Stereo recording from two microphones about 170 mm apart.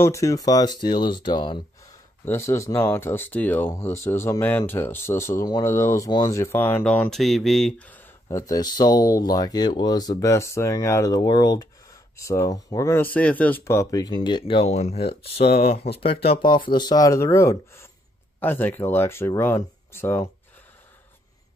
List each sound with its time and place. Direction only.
0.0 s speech: 20° left (ahead or behind)
2.2 s speech: 15° left (ahead or behind)